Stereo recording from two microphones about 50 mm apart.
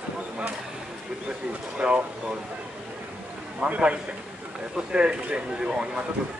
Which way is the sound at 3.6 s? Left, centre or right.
Right.